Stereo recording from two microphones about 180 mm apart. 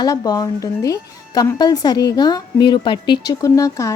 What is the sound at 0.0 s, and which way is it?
Speech, 20° left (ahead or behind).